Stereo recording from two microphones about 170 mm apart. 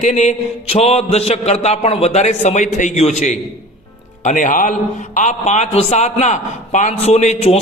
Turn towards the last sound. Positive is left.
turn(degrees=40)  # may be behind; listen again after turning